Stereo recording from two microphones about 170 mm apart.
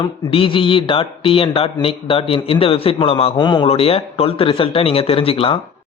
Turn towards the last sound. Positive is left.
turn(degrees=35)  # may be behind; listen again after turning